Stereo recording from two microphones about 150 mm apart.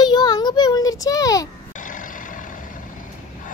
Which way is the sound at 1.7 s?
60° left (ahead or behind).